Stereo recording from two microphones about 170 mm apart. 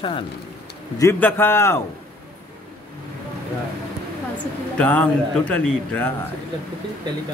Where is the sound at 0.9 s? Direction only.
15° left (ahead or behind).